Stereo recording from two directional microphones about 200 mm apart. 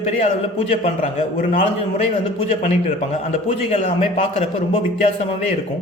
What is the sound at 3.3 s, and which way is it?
A man's voice, 30° left (ahead or behind).